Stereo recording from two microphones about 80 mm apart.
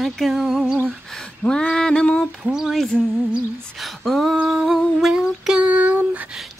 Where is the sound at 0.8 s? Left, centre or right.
Centre.